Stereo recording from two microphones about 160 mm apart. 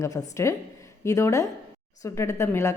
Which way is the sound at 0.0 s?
20° left (ahead or behind).